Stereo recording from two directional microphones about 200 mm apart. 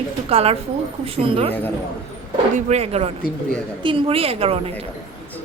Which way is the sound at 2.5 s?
30° right (ahead or behind).